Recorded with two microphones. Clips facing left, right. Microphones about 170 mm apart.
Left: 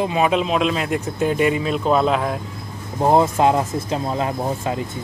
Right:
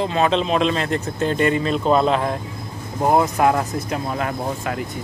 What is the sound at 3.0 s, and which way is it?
Speech, 25° left (ahead or behind).